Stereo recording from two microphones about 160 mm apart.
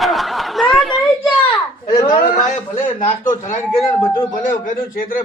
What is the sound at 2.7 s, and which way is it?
Speech, 50° left (ahead or behind).